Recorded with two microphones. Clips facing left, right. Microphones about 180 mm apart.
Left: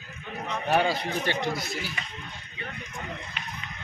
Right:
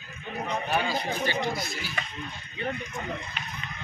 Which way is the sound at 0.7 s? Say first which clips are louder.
Left 6 dB; 65° left (ahead or behind).